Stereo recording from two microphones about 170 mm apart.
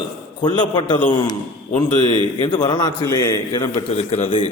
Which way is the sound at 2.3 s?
25° left (ahead or behind).